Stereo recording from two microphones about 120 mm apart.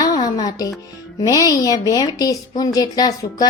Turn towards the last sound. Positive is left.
turn(degrees=35)  # may be behind; listen again after turning